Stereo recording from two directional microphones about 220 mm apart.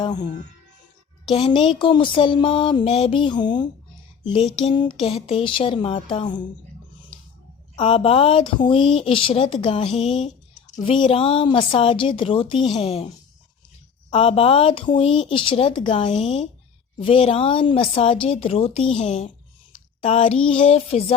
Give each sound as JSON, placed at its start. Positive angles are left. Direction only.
{"t": 0.0, "sound": "speech", "side_deg": 20}
{"t": 1.4, "sound": "speech", "side_deg": 20}
{"t": 4.2, "sound": "a sound", "side_deg": 20}
{"t": 4.6, "sound": "speech", "side_deg": 20}
{"t": 7.8, "sound": "speech", "side_deg": 25}
{"t": 10.0, "sound": "speech", "side_deg": 0}
{"t": 10.2, "sound": "a sound", "side_deg": 35}
{"t": 10.9, "sound": "speech", "side_deg": 25}
{"t": 14.1, "sound": "speech", "side_deg": 25}